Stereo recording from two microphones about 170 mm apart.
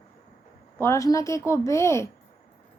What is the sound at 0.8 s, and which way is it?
Speech, 15° left (ahead or behind).